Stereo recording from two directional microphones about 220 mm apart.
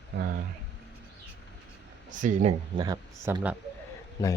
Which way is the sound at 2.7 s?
20° right (ahead or behind).